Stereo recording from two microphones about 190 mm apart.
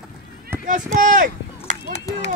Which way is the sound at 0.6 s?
40° right (ahead or behind).